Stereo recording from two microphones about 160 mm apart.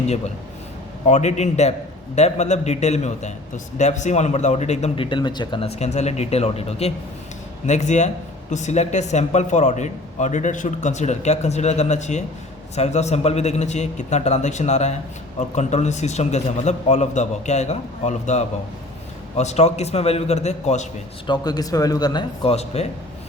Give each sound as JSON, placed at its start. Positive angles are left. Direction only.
{"t": 1.0, "sound": "speech", "side_deg": 45}
{"t": 21.2, "sound": "speech", "side_deg": 25}
{"t": 22.5, "sound": "a man's voice", "side_deg": 40}